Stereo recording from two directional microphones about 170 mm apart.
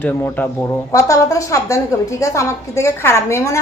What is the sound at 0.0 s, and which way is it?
Speech, 10° left (ahead or behind).